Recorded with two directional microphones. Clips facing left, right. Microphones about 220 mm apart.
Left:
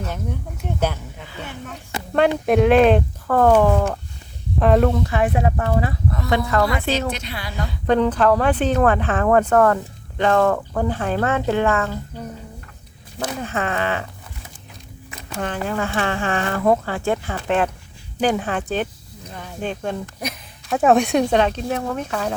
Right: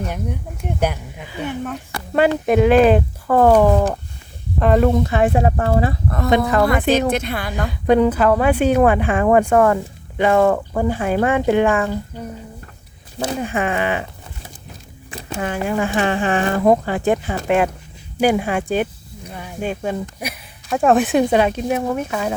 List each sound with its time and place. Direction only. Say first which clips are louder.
0.0 s speech: right 2 dB; 15° right (ahead or behind)
2.5 s speech: right 1 dB; centre (ahead or behind)
4.6 s speech: right 1 dB; centre (ahead or behind)
4.9 s speech: right 4 dB; 20° right (ahead or behind)
6.1 s a woman's voice: right 6 dB; 55° right (ahead or behind)
7.7 s speech: right 3 dB; 10° right (ahead or behind)
13.1 s speech: right 4 dB; 25° right (ahead or behind)
13.4 s speech: right 2 dB; 15° right (ahead or behind)
15.4 s speech: right 3 dB; 10° right (ahead or behind)